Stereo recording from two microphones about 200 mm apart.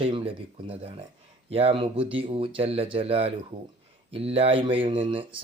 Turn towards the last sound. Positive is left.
turn(degrees=-25)  # may be behind; listen again after turning